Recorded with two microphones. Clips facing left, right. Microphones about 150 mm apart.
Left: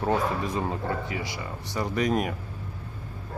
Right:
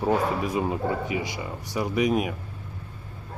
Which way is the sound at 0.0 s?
10° right (ahead or behind).